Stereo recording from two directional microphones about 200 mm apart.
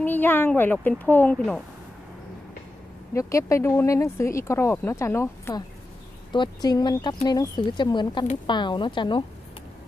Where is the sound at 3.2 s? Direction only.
15° left (ahead or behind).